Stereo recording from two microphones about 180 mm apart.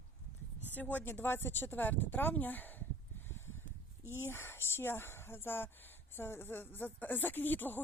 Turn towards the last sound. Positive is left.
turn(degrees=10)  # may be behind; listen again after turning